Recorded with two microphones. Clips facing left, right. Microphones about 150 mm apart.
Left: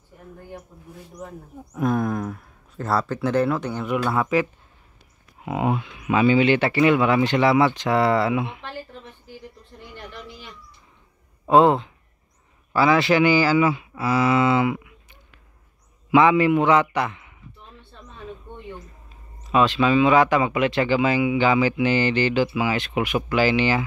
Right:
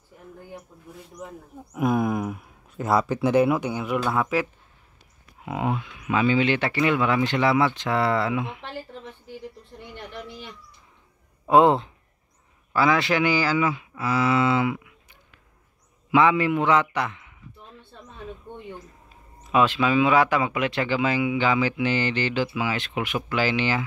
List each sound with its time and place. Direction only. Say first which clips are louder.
1.2 s speech: left 2 dB; 10° right (ahead or behind)
7.0 s speech: left 3 dB; 15° left (ahead or behind)
11.4 s speech: left 1 dB; 10° right (ahead or behind)
12.7 s speech: left 3 dB; centre (ahead or behind)
19.5 s speech: left 2 dB; 10° right (ahead or behind); by 23.8 s 5° left (ahead or behind)